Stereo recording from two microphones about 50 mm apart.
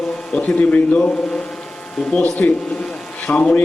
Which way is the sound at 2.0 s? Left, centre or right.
Left.